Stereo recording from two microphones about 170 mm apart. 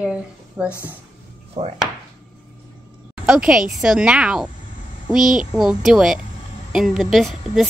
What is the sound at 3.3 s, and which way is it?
A woman's voice, 5° right (ahead or behind).